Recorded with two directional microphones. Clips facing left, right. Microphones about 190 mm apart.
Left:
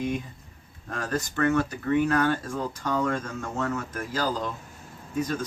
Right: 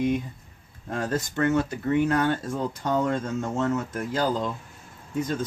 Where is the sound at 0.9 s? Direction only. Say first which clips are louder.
Right 2 dB; 25° right (ahead or behind).